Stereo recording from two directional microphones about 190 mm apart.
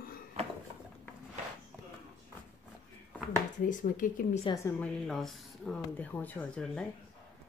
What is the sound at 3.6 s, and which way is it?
Speech, 45° left (ahead or behind).